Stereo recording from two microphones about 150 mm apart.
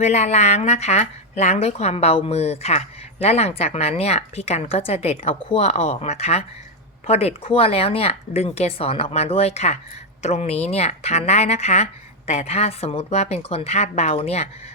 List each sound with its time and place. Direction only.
0.0 s speech: 50° left (ahead or behind)